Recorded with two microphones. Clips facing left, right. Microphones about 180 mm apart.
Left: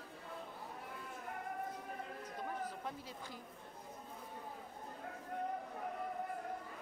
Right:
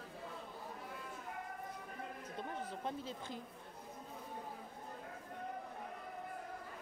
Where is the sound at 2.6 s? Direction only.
25° right (ahead or behind).